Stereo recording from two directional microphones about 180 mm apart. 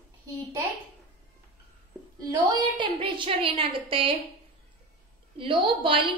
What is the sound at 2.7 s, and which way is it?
A woman's voice, 25° right (ahead or behind).